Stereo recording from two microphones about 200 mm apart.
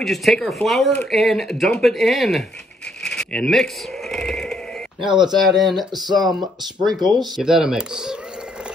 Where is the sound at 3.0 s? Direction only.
5° left (ahead or behind).